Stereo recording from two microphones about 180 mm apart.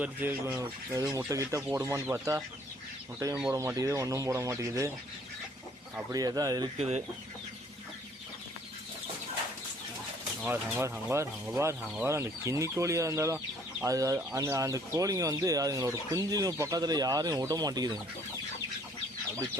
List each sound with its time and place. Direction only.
0.0 s speech: 10° right (ahead or behind)
3.6 s speech: 15° right (ahead or behind)
6.1 s speech: 20° right (ahead or behind)
6.7 s speech: 35° right (ahead or behind)
10.4 s speech: 15° right (ahead or behind)